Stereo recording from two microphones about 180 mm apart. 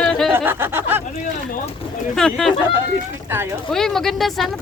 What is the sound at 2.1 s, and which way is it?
Speech, centre (ahead or behind).